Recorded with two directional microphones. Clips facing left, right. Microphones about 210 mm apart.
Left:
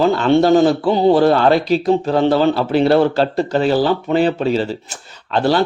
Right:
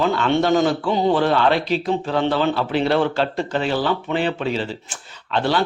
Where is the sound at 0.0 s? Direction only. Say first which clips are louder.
Left 6 dB; 35° left (ahead or behind).